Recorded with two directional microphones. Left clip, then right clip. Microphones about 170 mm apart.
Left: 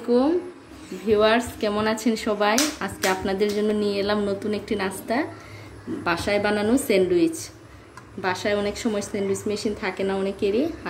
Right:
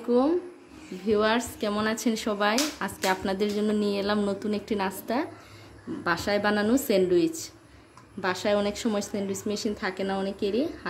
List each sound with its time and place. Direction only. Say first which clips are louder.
1.0 s speech: left 5 dB; 45° right (ahead or behind)